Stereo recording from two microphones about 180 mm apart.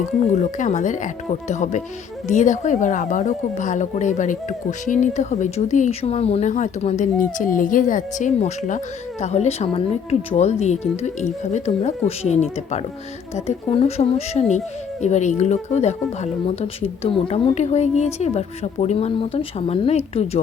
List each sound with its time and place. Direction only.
0.2 s speech: 40° left (ahead or behind)